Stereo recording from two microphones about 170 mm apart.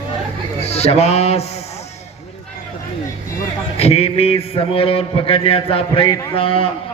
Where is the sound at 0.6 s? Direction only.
40° left (ahead or behind).